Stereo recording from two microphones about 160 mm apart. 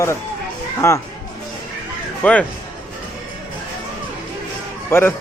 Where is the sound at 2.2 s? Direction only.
10° left (ahead or behind).